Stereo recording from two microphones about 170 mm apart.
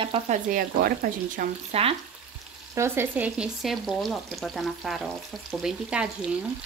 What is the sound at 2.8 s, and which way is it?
Speech, 15° right (ahead or behind).